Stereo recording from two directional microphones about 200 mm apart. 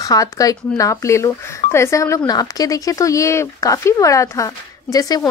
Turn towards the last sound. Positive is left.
turn(degrees=20)  # may be behind; listen again after turning